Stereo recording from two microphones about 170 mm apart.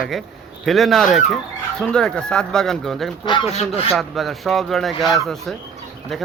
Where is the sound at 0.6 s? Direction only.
Centre (ahead or behind).